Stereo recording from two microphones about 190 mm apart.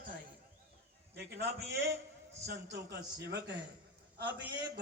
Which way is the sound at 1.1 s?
60° right (ahead or behind).